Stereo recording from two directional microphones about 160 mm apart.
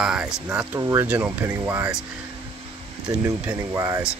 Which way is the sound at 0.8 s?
15° right (ahead or behind).